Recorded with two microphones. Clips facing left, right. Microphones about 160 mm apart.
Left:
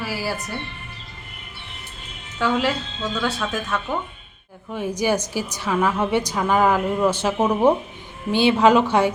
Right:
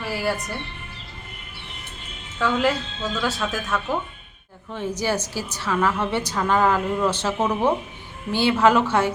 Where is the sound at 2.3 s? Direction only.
Centre (ahead or behind).